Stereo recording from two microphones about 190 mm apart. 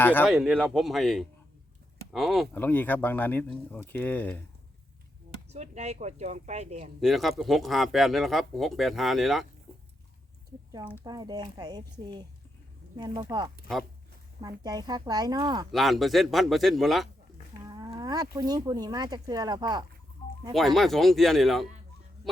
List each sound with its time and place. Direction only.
0.0 s speech: 10° left (ahead or behind)
0.3 s speech: 5° right (ahead or behind)
5.5 s speech: 35° right (ahead or behind)
7.0 s speech: centre (ahead or behind)
11.0 s speech: 20° right (ahead or behind)
13.3 s speech: 20° right (ahead or behind)
14.6 s speech: 20° right (ahead or behind)
15.7 s speech: centre (ahead or behind)
17.7 s speech: 20° right (ahead or behind)
20.5 s speech: centre (ahead or behind)